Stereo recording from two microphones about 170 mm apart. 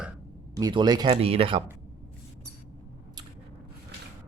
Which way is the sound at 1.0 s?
35° right (ahead or behind).